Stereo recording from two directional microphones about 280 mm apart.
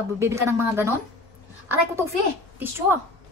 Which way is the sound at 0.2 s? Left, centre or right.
Centre.